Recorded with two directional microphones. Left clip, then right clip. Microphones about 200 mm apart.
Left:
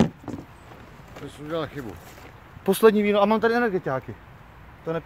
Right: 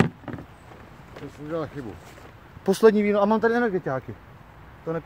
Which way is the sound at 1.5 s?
10° left (ahead or behind).